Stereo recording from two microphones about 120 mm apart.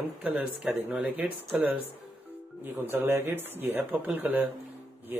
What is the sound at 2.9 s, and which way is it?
Speech, 15° right (ahead or behind).